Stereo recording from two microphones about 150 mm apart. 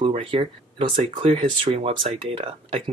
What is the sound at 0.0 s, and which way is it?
Speech, 35° right (ahead or behind).